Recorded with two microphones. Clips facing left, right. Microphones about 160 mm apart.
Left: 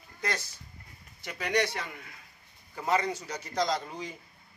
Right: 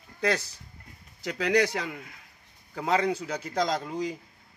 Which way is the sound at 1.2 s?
90° right.